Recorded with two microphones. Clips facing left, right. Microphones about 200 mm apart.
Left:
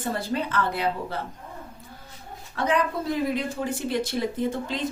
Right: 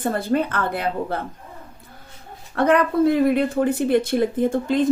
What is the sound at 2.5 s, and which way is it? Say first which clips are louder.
A woman's voice: right 7 dB; 60° right (ahead or behind).